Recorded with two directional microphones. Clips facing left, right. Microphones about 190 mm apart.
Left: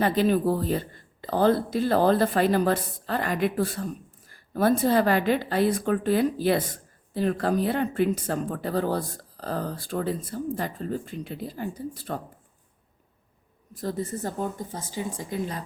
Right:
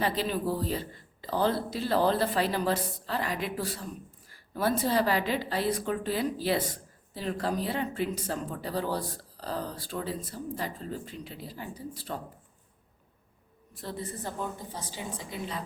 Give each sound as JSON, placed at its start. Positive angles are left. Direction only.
{"t": 0.0, "sound": "a woman's voice", "side_deg": 50}
{"t": 13.7, "sound": "a woman's voice", "side_deg": 40}